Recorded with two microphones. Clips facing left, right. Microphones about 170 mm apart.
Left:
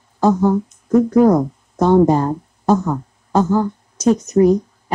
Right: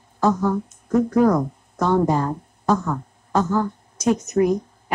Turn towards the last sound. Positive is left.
turn(degrees=35)  # may be behind; listen again after turning